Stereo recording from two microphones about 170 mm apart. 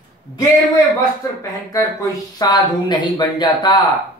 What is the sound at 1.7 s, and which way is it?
Speech, 20° left (ahead or behind).